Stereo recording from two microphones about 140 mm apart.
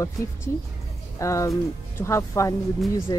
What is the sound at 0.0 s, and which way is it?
Speech, 20° left (ahead or behind).